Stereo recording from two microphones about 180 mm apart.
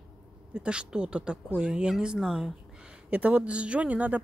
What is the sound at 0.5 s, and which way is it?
A woman's voice, 5° right (ahead or behind).